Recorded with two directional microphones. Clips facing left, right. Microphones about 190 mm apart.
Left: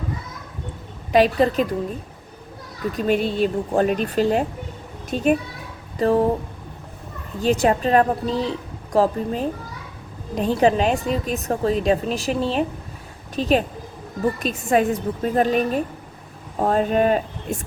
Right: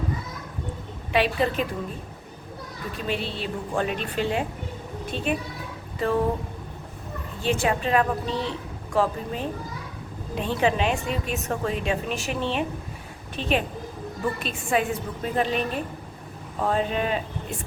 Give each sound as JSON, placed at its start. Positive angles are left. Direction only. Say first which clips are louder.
{"t": 1.1, "sound": "a woman's voice", "louder": "left 6 dB", "side_deg": 40}
{"t": 3.0, "sound": "a woman's voice", "louder": "left 10 dB", "side_deg": 45}
{"t": 7.4, "sound": "a woman's voice", "louder": "left 6 dB", "side_deg": 40}